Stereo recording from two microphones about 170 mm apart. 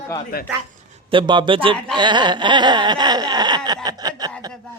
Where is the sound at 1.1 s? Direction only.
25° right (ahead or behind).